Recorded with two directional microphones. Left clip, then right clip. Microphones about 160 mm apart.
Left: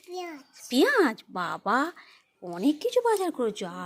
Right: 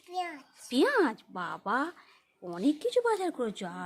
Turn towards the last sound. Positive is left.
turn(degrees=10)  # may be behind; listen again after turning